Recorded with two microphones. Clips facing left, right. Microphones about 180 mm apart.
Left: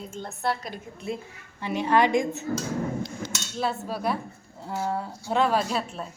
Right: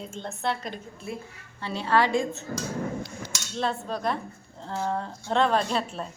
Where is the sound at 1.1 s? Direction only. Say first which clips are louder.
Left 4 dB; 25° left (ahead or behind).